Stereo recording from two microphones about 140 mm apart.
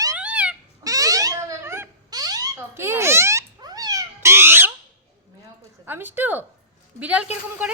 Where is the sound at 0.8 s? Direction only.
25° right (ahead or behind).